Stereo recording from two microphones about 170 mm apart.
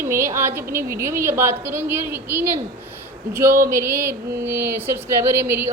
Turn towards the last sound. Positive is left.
turn(degrees=-15)  # may be behind; listen again after turning